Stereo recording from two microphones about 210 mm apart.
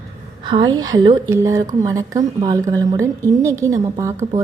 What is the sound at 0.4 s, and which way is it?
A woman's voice, 20° right (ahead or behind).